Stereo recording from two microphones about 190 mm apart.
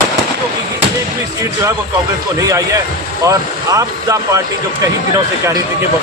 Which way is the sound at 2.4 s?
15° right (ahead or behind).